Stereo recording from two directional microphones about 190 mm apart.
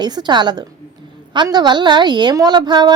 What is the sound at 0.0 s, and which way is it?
A woman's voice, 25° right (ahead or behind).